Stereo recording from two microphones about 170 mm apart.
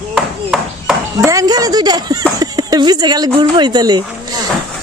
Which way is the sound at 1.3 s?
20° right (ahead or behind).